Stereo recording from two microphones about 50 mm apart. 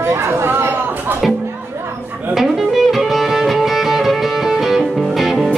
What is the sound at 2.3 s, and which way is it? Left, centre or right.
Music, centre.